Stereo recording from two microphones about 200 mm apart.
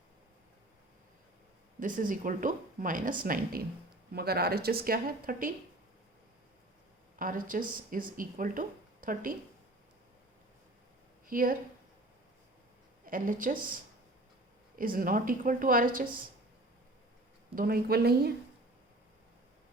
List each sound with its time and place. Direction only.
1.8 s a woman's voice: 40° right (ahead or behind)
7.2 s a woman's voice: 45° right (ahead or behind)
11.3 s a woman's voice: 45° right (ahead or behind)
13.1 s a woman's voice: 45° right (ahead or behind)
14.8 s a woman's voice: 45° right (ahead or behind)
17.5 s a woman's voice: 45° right (ahead or behind)